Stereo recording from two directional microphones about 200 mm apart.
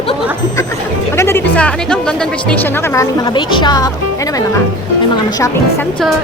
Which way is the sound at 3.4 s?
20° left (ahead or behind).